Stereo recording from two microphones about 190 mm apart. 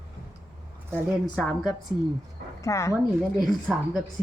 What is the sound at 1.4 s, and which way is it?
Speech, centre (ahead or behind).